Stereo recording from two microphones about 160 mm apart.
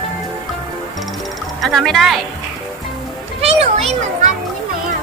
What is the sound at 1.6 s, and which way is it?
Speech, centre (ahead or behind).